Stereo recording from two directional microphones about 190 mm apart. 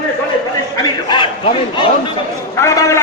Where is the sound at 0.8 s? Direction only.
25° left (ahead or behind).